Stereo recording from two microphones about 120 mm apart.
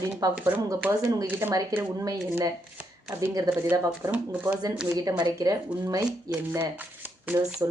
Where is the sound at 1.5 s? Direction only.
30° right (ahead or behind).